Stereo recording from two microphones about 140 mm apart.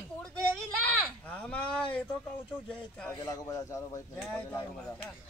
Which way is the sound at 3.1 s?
25° left (ahead or behind).